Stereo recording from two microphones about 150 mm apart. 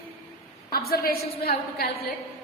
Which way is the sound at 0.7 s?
90° left.